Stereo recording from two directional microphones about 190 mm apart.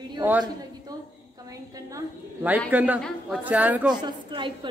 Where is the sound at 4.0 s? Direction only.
25° right (ahead or behind).